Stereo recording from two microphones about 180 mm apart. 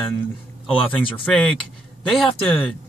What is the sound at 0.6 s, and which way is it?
Speech, 30° left (ahead or behind).